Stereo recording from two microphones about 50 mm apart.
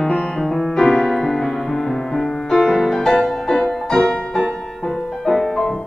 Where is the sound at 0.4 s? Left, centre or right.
Centre.